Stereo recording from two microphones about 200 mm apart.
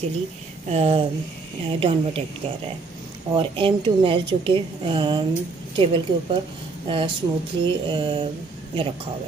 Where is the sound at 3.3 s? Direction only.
25° right (ahead or behind).